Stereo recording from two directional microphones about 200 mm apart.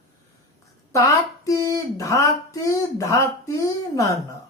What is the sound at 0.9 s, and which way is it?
Speech, 15° left (ahead or behind).